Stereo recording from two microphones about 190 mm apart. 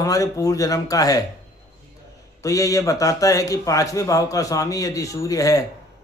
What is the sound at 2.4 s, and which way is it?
A man's voice, 15° left (ahead or behind).